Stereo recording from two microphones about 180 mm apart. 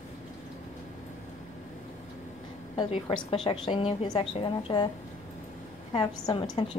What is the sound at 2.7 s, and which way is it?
A woman's voice, 30° left (ahead or behind).